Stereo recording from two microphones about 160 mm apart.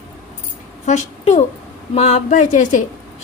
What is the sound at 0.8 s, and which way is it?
A woman's voice, 45° left (ahead or behind).